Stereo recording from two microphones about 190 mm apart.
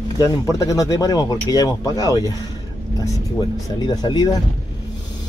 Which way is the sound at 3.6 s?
20° left (ahead or behind).